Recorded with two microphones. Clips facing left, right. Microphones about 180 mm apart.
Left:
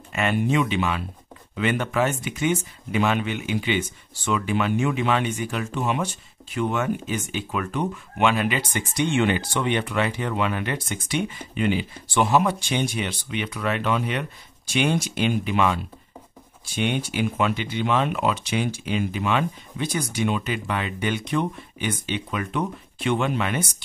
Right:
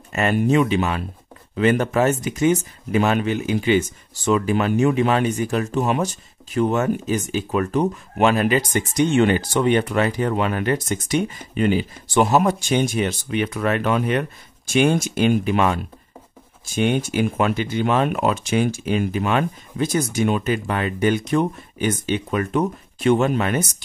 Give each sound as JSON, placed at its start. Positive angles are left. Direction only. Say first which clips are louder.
{"t": 0.1, "sound": "speech", "louder": "right 4 dB", "side_deg": -40}